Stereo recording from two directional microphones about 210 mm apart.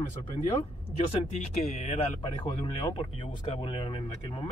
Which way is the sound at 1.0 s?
30° left (ahead or behind).